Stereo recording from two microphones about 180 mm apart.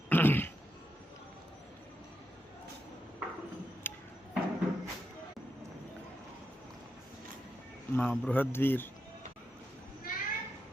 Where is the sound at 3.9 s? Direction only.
10° left (ahead or behind).